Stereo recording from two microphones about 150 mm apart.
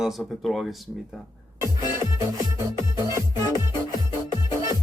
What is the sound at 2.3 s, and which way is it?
Music, 25° right (ahead or behind).